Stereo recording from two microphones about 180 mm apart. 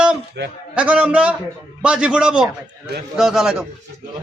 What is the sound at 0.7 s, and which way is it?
A man's voice, 5° right (ahead or behind).